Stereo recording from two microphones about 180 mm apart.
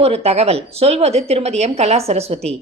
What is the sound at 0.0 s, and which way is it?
A woman's voice, 35° right (ahead or behind).